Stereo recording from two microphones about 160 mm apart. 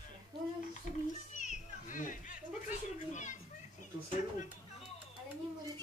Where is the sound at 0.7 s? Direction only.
50° left (ahead or behind).